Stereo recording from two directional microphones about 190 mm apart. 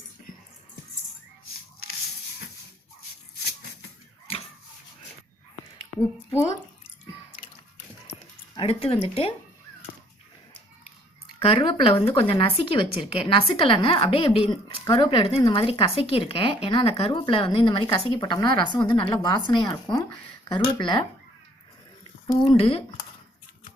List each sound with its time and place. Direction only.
6.3 s speech: 15° left (ahead or behind)
8.5 s speech: 30° left (ahead or behind)
11.3 s a woman's voice: 30° left (ahead or behind)
22.4 s a woman's voice: 30° left (ahead or behind)